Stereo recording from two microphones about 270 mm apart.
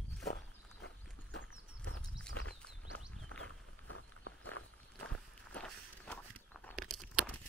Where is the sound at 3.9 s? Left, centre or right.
Left.